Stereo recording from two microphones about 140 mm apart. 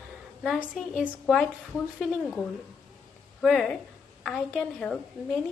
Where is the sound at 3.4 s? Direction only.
5° left (ahead or behind).